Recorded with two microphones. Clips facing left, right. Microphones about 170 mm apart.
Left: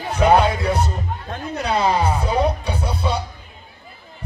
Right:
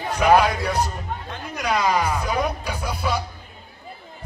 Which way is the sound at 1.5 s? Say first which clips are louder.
Left 2 dB; 30° left (ahead or behind).